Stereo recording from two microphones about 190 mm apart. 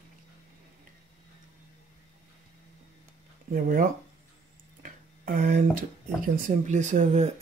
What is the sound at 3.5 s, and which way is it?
Speech, 50° right (ahead or behind).